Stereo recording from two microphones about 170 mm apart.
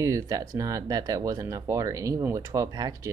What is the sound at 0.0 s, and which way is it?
Speech, 20° right (ahead or behind).